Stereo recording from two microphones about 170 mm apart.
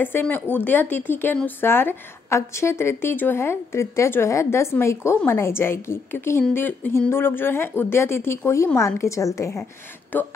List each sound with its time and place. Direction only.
0.0 s speech: 10° left (ahead or behind)